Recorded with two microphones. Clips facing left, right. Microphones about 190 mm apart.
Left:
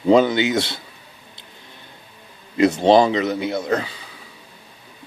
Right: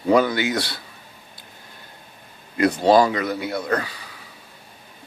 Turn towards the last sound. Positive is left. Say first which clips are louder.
# left 2 dB
turn(degrees=25)  # may be behind; listen again after turning